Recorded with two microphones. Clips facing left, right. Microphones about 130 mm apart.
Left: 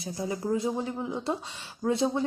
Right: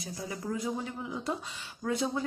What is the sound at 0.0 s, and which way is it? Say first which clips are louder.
Speech: left 6 dB; 30° left (ahead or behind).